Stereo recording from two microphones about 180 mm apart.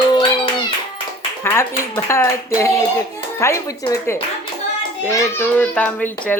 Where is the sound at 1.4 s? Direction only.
15° left (ahead or behind).